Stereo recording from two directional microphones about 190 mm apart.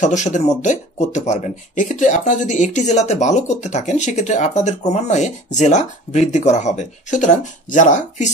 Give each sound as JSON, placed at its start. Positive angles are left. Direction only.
{"t": 0.0, "sound": "speech", "side_deg": 40}